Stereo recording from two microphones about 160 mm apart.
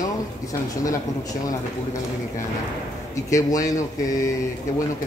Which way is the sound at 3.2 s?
20° left (ahead or behind).